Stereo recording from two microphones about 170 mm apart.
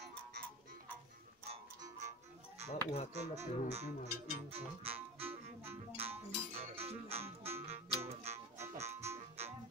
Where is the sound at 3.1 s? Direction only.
40° right (ahead or behind).